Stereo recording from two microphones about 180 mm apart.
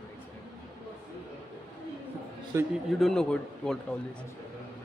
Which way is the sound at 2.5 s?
15° right (ahead or behind).